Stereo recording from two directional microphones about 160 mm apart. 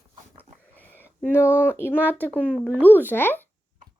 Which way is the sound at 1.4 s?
10° right (ahead or behind).